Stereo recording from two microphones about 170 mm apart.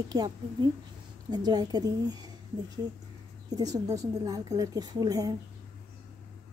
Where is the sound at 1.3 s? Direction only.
25° right (ahead or behind).